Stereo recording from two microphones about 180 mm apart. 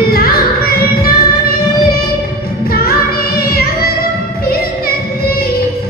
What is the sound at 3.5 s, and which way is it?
Music, 55° left (ahead or behind).